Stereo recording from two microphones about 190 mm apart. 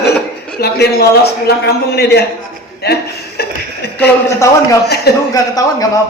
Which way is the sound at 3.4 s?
55° left (ahead or behind).